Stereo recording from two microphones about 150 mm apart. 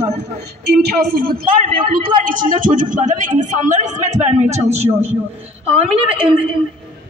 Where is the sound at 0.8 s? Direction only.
90° right; by 5.2 s 45° right (ahead or behind).